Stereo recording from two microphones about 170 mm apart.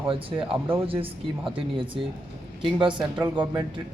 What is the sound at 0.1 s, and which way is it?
Speech, 30° right (ahead or behind).